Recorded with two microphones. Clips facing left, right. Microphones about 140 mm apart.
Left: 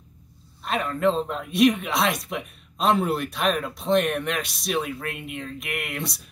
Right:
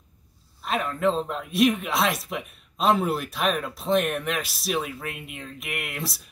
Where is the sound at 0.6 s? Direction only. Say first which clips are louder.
Left 1 dB; centre (ahead or behind).